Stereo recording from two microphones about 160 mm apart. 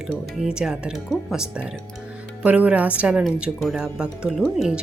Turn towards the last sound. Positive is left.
turn(degrees=0)  # may be behind; listen again after turning